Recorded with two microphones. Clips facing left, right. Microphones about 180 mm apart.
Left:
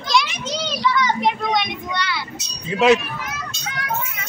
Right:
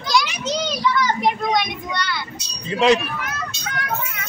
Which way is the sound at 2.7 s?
5° left (ahead or behind).